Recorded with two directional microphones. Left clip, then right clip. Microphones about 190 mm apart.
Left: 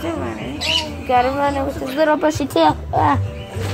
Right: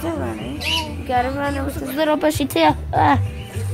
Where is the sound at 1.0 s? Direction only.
10° right (ahead or behind).